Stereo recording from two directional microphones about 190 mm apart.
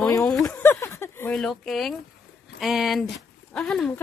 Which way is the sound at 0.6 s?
15° left (ahead or behind).